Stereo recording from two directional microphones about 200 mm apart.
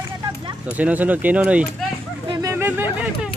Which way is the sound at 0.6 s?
5° right (ahead or behind).